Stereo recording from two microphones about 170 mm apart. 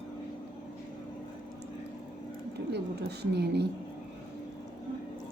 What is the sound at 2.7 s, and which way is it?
Speech, 75° right (ahead or behind).